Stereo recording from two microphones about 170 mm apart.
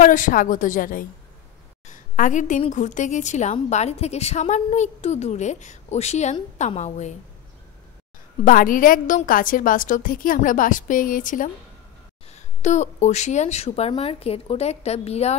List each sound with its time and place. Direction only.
0.0 s a woman's voice: 50° left (ahead or behind)
8.5 s a woman's voice: 55° left (ahead or behind); by 15.3 s 40° left (ahead or behind)